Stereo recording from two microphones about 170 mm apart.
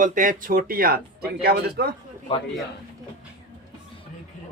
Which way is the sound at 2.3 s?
35° left (ahead or behind).